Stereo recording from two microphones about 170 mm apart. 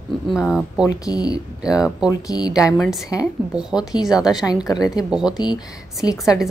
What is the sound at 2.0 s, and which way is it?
Speech, 20° left (ahead or behind).